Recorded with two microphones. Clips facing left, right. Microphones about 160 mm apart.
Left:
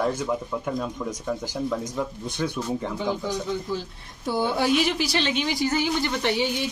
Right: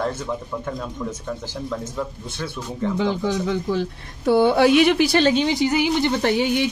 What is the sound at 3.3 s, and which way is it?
Speech, 70° right (ahead or behind).